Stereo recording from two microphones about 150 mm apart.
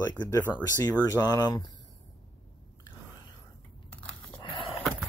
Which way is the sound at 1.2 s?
25° left (ahead or behind).